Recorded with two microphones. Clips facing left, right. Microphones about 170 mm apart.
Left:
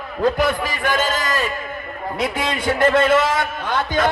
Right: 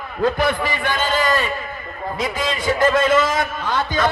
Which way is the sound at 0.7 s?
45° left (ahead or behind).